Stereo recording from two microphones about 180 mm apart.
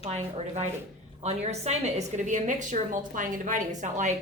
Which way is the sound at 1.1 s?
35° right (ahead or behind).